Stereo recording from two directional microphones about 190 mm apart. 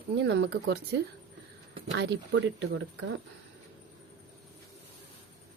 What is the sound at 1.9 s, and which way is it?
Speech, 65° right (ahead or behind).